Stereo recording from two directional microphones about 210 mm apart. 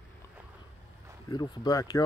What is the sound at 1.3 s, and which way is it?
Speech, 20° left (ahead or behind).